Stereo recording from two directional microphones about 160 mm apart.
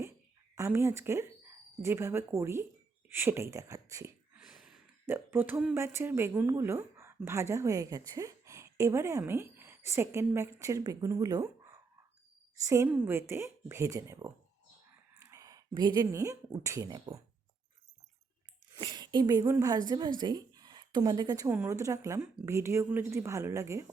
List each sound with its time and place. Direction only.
0.5 s a woman's voice: 15° right (ahead or behind)
4.4 s sigh: 5° right (ahead or behind)
5.0 s a woman's voice: 15° right (ahead or behind)
15.2 s a sound: 20° right (ahead or behind)
16.6 s speech: 20° right (ahead or behind)
18.8 s a woman's voice: 25° right (ahead or behind)